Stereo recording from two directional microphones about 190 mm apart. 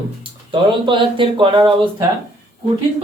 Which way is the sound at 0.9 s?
25° right (ahead or behind).